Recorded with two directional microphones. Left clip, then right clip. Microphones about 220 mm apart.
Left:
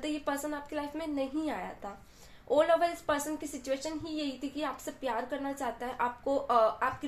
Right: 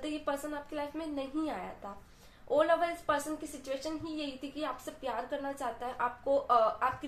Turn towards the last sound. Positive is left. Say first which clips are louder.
# left 1 dB
turn(degrees=25)  # may be behind; listen again after turning